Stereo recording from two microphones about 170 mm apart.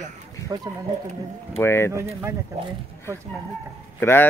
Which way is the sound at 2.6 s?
40° right (ahead or behind).